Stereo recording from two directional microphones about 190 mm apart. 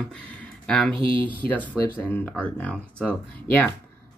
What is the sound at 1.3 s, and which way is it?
Speech, 10° left (ahead or behind).